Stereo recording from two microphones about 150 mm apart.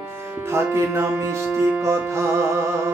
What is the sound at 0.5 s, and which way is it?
Speech, 15° right (ahead or behind).